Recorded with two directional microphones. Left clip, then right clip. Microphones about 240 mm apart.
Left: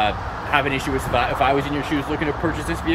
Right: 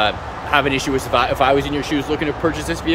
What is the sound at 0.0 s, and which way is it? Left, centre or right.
Speech, centre.